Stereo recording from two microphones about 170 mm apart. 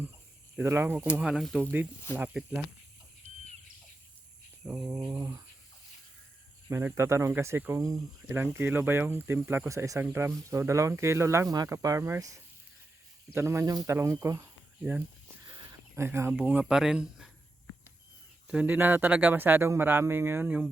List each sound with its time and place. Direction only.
0.5 s speech: 15° right (ahead or behind)
4.6 s speech: 5° right (ahead or behind)
4.9 s a sound: 20° right (ahead or behind)
6.7 s speech: 15° right (ahead or behind)
18.4 s speech: 10° right (ahead or behind)